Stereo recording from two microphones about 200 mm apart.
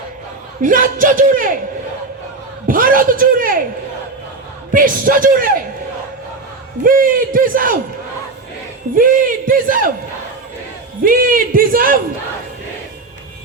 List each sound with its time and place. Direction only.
0.6 s speech: 40° right (ahead or behind)
2.6 s a sound: 45° right (ahead or behind)
4.7 s speech: 45° right (ahead or behind)
6.8 s speech: 45° right (ahead or behind)
9.0 s speech: 45° right (ahead or behind)
11.0 s speech: 45° right (ahead or behind)